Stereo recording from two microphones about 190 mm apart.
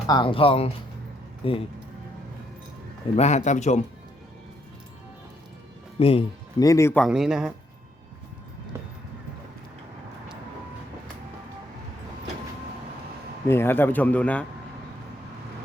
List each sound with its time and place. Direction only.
0.1 s speech: 25° left (ahead or behind)
3.2 s a man's voice: 35° left (ahead or behind)
6.0 s speech: 30° left (ahead or behind)
6.7 s a man's voice: 15° left (ahead or behind)
7.0 s speech: centre (ahead or behind)
13.5 s a man's voice: 10° left (ahead or behind)